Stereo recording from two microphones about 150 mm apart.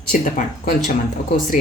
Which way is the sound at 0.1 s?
60° left (ahead or behind).